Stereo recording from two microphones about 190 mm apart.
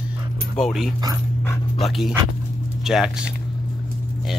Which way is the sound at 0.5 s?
Centre (ahead or behind).